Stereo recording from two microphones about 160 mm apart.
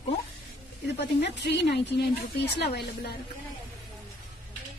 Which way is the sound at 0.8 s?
90° left.